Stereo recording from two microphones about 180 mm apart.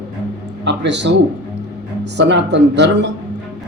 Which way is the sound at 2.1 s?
75° right (ahead or behind).